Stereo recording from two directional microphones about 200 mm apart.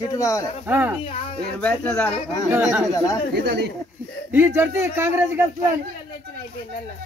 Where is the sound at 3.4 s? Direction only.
60° right (ahead or behind).